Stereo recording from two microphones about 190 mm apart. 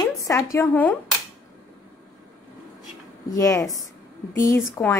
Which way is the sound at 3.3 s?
15° left (ahead or behind).